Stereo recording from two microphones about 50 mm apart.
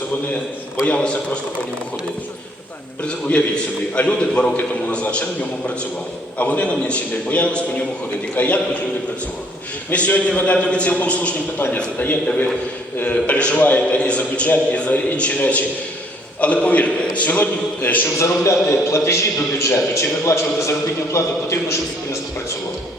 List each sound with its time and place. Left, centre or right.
0.9 s a man's voice: left
3.0 s a man's voice: left
9.9 s a man's voice: left
13.1 s a man's voice: left
18.2 s a man's voice: left